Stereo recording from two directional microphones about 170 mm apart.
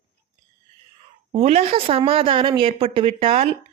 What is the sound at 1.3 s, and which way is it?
A woman's voice, 40° right (ahead or behind).